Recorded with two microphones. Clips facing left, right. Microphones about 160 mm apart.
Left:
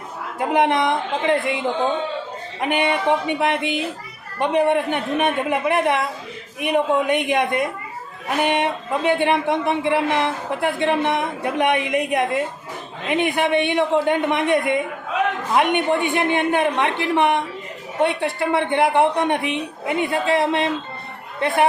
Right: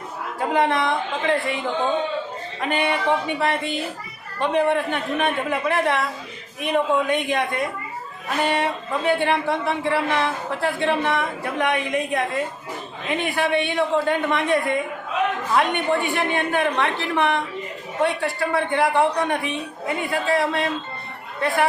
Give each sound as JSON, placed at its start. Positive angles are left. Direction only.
{"t": 0.3, "sound": "speech", "side_deg": 20}